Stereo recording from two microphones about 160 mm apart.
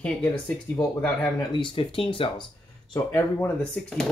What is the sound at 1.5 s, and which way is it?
Speech, 30° left (ahead or behind).